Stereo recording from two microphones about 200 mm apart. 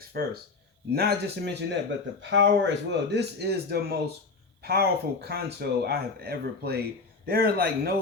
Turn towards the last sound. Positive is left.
turn(degrees=-50)  # may be behind; listen again after turning